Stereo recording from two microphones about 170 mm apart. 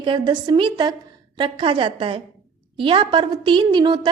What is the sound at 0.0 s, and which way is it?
A woman's voice, 30° right (ahead or behind).